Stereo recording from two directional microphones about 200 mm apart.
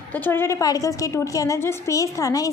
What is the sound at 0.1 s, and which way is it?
A woman's voice, 10° left (ahead or behind).